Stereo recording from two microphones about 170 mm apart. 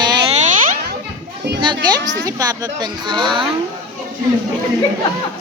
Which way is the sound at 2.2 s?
20° right (ahead or behind).